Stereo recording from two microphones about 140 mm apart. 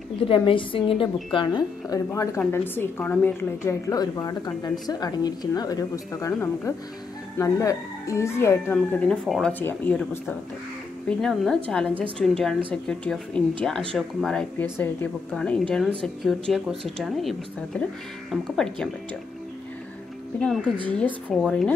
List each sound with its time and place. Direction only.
0.2 s a woman's voice: 40° left (ahead or behind); by 8.7 s 20° left (ahead or behind)
8.7 s speech: 5° left (ahead or behind)
20.3 s speech: 5° left (ahead or behind)